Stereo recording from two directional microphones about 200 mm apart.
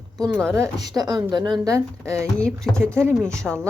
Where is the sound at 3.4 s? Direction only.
5° left (ahead or behind).